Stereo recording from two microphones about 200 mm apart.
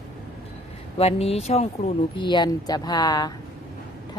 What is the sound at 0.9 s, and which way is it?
Speech, 30° left (ahead or behind).